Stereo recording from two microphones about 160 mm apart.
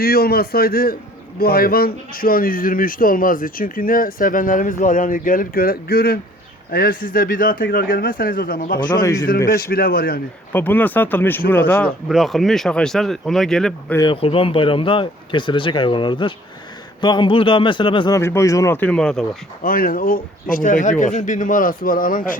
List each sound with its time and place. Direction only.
0.0 s a man's voice: 70° left (ahead or behind)
10.5 s speech: 10° left (ahead or behind)
12.0 s speech: centre (ahead or behind)
14.1 s speech: 35° left (ahead or behind)
18.2 s speech: 15° left (ahead or behind)
19.6 s speech: 60° left (ahead or behind)